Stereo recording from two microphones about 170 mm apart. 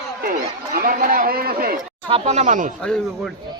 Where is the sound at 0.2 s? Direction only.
60° right (ahead or behind).